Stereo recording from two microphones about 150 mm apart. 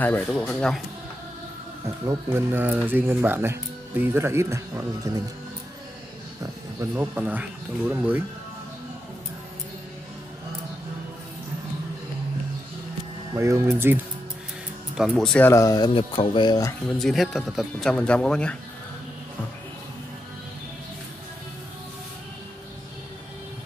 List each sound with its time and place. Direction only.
0.3 s speech: 5° left (ahead or behind)
2.0 s speech: 20° right (ahead or behind)
6.4 s speech: 15° right (ahead or behind)
13.3 s speech: 20° right (ahead or behind)
15.0 s speech: 5° left (ahead or behind)
15.4 s speech: 20° left (ahead or behind)
15.9 s speech: 40° left (ahead or behind)
17.0 s speech: centre (ahead or behind)